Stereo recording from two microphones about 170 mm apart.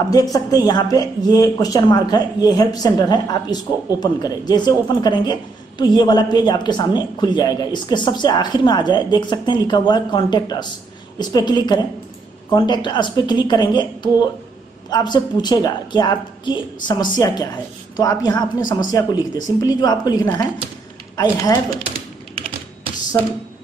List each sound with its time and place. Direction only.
0.1 s speech: 20° left (ahead or behind)